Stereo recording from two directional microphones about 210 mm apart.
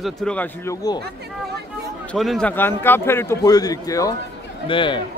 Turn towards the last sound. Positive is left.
turn(degrees=25)  # may be behind; listen again after turning